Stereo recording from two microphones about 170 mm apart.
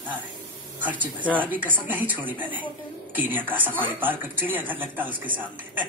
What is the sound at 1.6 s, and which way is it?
A woman's voice, 10° right (ahead or behind).